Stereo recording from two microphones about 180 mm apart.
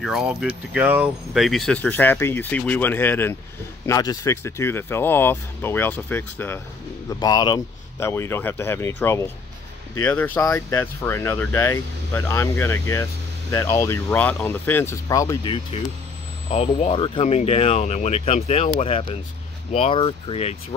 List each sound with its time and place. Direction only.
0.0 s speech: centre (ahead or behind)
7.2 s speech: 20° left (ahead or behind)